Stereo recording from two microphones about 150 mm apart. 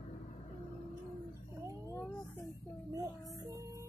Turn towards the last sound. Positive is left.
turn(degrees=-20)  # may be behind; listen again after turning